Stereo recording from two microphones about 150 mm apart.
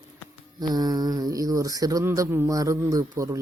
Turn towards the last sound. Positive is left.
turn(degrees=-20)  # may be behind; listen again after turning